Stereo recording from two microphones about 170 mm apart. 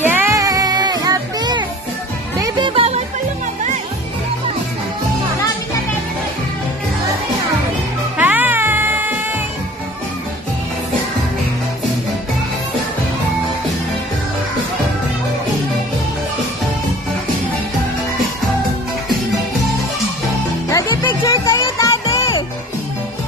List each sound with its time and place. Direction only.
0.0 s music: 15° right (ahead or behind); by 3.0 s 35° right (ahead or behind)
8.2 s cat: 10° right (ahead or behind)
20.7 s music: 25° left (ahead or behind)